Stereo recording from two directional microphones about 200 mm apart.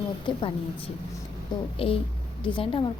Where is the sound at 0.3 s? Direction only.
25° left (ahead or behind).